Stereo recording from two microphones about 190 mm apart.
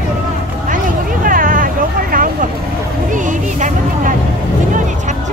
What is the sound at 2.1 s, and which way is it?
Vehicle, 45° right (ahead or behind).